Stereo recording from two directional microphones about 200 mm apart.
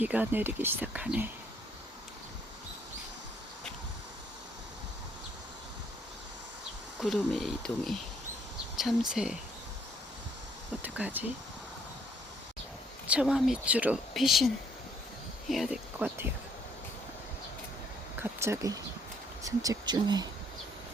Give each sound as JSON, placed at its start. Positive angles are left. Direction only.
{"t": 0.0, "sound": "speech", "side_deg": -10}
{"t": 7.0, "sound": "speech", "side_deg": 0}
{"t": 10.8, "sound": "speech", "side_deg": -10}
{"t": 13.1, "sound": "speech", "side_deg": -5}
{"t": 18.2, "sound": "speech", "side_deg": -15}